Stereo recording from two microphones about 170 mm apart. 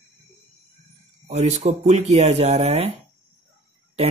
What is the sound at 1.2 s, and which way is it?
Speech, 40° right (ahead or behind).